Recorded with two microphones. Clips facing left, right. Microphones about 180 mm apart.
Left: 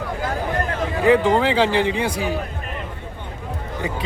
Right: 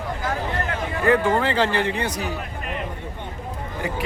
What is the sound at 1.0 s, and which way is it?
A man's voice, 15° left (ahead or behind).